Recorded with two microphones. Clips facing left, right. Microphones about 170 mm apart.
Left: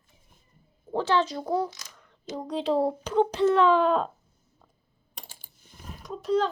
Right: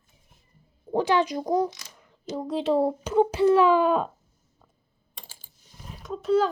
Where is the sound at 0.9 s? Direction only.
15° right (ahead or behind).